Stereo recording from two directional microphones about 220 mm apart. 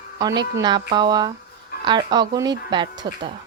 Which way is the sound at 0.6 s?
20° right (ahead or behind).